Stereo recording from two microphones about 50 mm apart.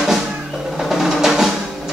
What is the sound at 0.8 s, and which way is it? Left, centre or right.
Percussion, centre.